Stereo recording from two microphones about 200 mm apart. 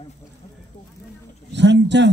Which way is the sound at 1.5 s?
60° right (ahead or behind).